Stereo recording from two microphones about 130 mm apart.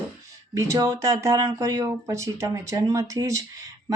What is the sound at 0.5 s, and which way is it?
Speech, 25° right (ahead or behind).